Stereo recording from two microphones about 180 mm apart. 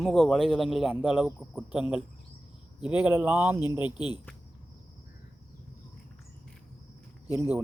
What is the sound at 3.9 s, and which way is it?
Speech, 25° left (ahead or behind).